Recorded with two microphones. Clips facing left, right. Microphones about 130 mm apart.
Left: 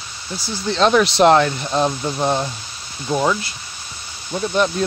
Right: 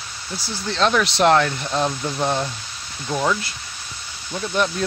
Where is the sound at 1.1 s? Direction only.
20° left (ahead or behind).